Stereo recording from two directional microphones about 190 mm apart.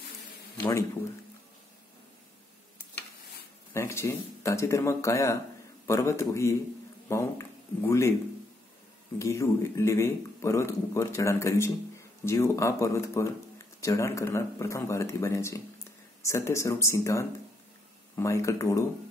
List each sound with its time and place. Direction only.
0.6 s speech: 10° left (ahead or behind)
3.7 s speech: 15° left (ahead or behind)
9.2 s speech: 15° left (ahead or behind)